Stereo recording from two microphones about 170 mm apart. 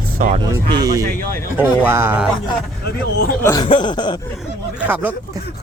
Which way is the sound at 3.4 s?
25° left (ahead or behind).